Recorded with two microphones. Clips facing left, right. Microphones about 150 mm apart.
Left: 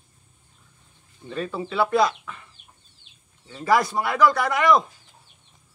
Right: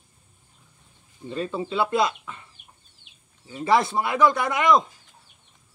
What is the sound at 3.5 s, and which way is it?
Speech, 20° right (ahead or behind).